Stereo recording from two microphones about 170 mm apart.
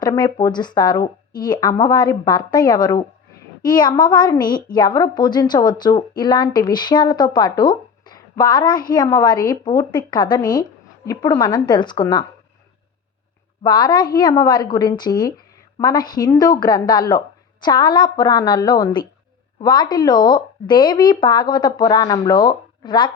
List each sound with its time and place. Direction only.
0.0 s a woman's voice: 25° left (ahead or behind)
13.7 s a woman's voice: 25° left (ahead or behind)